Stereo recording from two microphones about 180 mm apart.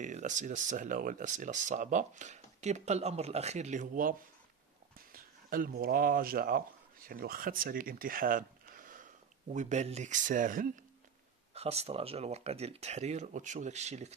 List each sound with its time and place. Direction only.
0.0 s speech: 45° right (ahead or behind)
11.5 s speech: 35° right (ahead or behind)